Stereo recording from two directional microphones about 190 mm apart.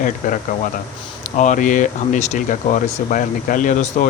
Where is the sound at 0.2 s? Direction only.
40° left (ahead or behind).